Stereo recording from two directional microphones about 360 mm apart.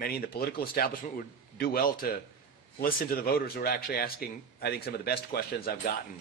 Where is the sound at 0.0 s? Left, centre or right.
Left.